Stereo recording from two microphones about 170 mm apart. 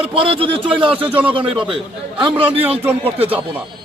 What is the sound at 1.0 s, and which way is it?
Speech, 10° right (ahead or behind).